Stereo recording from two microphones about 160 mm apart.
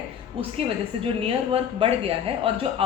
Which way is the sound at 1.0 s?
35° right (ahead or behind).